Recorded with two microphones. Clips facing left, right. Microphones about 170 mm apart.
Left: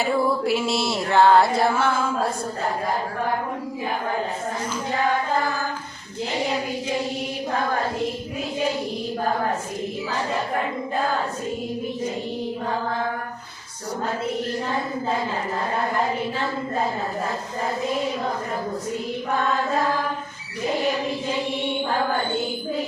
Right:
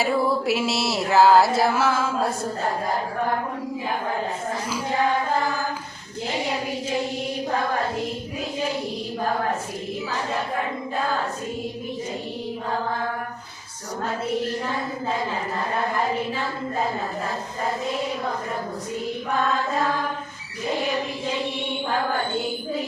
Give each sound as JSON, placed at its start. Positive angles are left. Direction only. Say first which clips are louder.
{"t": 0.0, "sound": "music", "louder": "even", "side_deg": 0}